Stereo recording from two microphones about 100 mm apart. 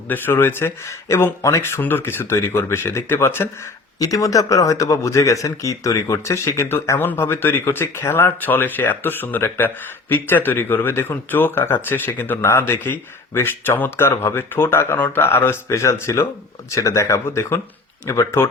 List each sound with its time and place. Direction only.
0.1 s speech: 20° left (ahead or behind)
1.8 s speech: 20° left (ahead or behind)
4.0 s speech: 35° left (ahead or behind)